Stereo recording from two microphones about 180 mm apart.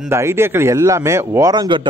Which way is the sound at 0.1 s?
15° right (ahead or behind).